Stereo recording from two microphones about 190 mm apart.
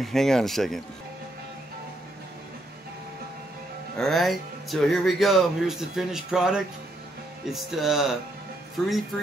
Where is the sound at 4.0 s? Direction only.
Centre (ahead or behind).